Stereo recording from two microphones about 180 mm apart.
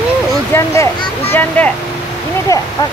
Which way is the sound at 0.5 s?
15° left (ahead or behind).